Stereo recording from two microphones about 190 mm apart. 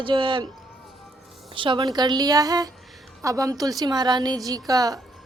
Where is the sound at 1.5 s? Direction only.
25° right (ahead or behind).